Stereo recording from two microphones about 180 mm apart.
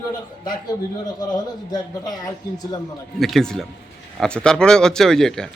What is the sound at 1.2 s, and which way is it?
Speech, 20° left (ahead or behind).